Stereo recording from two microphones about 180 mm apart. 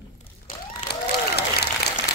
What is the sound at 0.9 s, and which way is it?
Applause, 65° left (ahead or behind).